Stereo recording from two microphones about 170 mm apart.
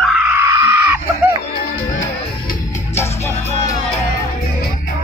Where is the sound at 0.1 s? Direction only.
10° right (ahead or behind).